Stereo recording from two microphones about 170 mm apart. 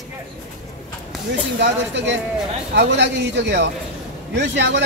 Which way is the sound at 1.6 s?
90° right.